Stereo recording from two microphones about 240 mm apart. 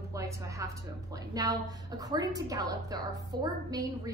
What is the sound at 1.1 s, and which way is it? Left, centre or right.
A woman's voice, centre.